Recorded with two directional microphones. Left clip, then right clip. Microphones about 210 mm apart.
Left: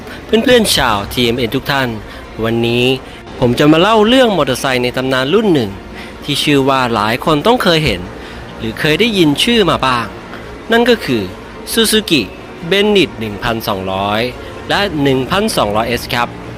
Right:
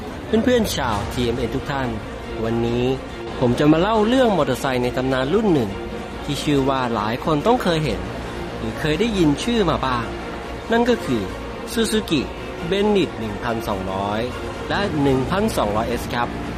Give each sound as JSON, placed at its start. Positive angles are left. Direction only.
{"t": 0.3, "sound": "speech", "side_deg": 20}